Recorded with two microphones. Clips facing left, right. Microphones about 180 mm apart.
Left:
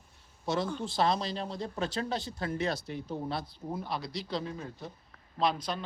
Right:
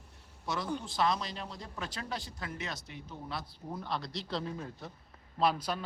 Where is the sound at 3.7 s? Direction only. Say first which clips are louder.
Left 2 dB; 5° left (ahead or behind).